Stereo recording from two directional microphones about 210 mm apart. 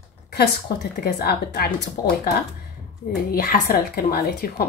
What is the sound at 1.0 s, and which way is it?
Speech, 50° left (ahead or behind).